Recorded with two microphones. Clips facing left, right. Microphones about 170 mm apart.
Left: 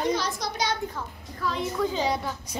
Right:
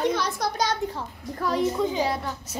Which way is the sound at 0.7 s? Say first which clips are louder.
Right 2 dB; 40° right (ahead or behind).